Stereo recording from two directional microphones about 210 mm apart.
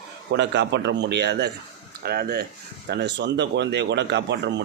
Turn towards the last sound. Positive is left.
turn(degrees=-55)  # may be behind; listen again after turning